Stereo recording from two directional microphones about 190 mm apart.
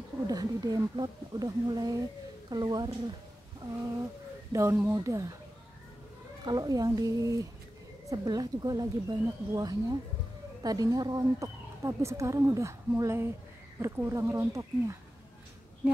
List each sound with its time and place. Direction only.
0.3 s speech: 20° right (ahead or behind)
4.5 s speech: 15° right (ahead or behind)
6.4 s speech: 20° right (ahead or behind)